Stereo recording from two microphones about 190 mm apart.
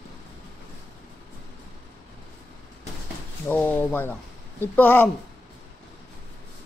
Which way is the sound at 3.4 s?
10° left (ahead or behind).